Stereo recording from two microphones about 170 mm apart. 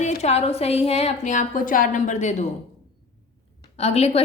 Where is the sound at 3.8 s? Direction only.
40° left (ahead or behind).